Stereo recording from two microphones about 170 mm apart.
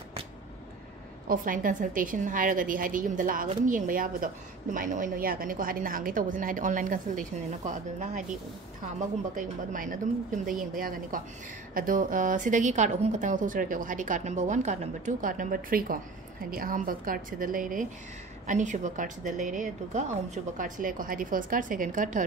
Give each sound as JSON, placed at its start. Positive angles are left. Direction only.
{"t": 1.2, "sound": "a woman's voice", "side_deg": -55}
{"t": 9.3, "sound": "a woman's voice", "side_deg": -50}